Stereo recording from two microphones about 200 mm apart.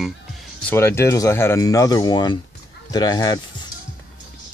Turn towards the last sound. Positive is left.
turn(degrees=20)  # may be behind; listen again after turning